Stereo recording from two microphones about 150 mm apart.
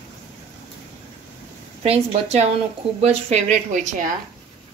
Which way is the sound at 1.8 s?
45° right (ahead or behind).